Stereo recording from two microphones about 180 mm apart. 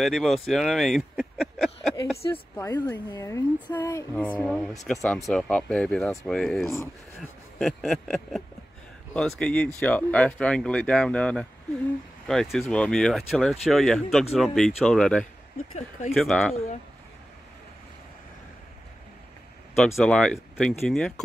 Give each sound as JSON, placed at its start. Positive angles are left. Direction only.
{"t": 0.0, "sound": "speech", "side_deg": 0}
{"t": 2.5, "sound": "speech", "side_deg": 10}
{"t": 20.0, "sound": "speech", "side_deg": 5}